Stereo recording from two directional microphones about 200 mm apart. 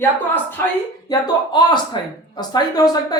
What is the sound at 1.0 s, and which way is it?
Speech, 20° left (ahead or behind).